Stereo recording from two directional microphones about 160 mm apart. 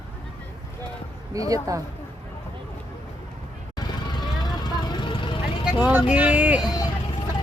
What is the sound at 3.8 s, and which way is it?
Vehicle, 25° left (ahead or behind).